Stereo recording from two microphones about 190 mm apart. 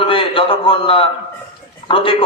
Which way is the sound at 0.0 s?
30° left (ahead or behind).